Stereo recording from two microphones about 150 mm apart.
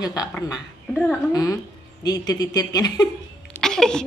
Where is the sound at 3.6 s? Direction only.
5° left (ahead or behind).